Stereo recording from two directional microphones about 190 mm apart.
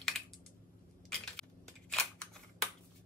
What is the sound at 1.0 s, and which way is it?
Scissors, 5° left (ahead or behind).